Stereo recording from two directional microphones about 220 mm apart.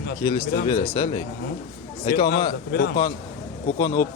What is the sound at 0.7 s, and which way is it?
Speech, 15° left (ahead or behind).